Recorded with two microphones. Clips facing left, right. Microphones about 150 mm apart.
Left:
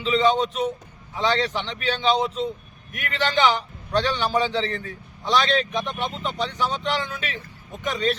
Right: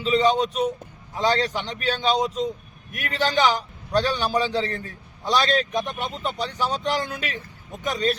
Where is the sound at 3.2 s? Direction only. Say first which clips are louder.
Even; 40° right (ahead or behind).